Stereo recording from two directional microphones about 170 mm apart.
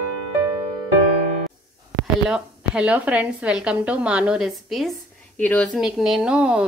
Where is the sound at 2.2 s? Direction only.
5° right (ahead or behind).